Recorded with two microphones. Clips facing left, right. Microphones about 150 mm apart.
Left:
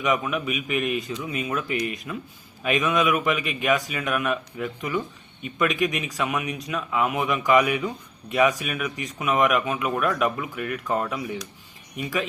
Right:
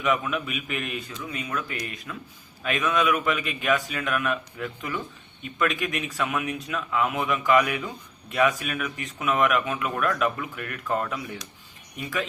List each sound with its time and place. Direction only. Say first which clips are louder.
0.0 s speech: left 1 dB; 10° left (ahead or behind)
0.9 s speech: left 5 dB; 20° left (ahead or behind)